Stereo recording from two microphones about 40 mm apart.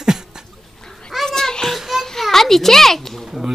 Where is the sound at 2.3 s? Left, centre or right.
Centre.